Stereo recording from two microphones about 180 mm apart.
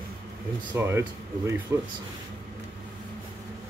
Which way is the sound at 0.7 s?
15° right (ahead or behind).